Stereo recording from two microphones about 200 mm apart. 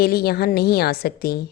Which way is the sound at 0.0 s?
50° left (ahead or behind).